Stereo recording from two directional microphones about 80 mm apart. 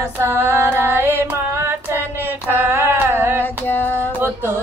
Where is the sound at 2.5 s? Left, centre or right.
Right.